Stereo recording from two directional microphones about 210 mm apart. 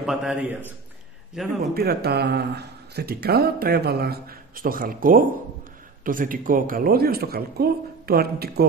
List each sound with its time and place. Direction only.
0.0 s a man's voice: centre (ahead or behind)
1.7 s speech: 45° right (ahead or behind)